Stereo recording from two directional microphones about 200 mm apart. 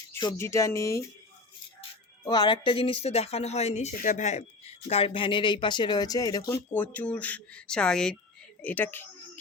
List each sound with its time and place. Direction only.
0.1 s speech: 15° left (ahead or behind)
2.2 s speech: 20° left (ahead or behind); by 8.1 s 5° left (ahead or behind)
8.6 s a sound: 10° left (ahead or behind)